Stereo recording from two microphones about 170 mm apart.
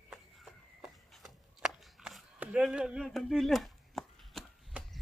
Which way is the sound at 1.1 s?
Centre (ahead or behind).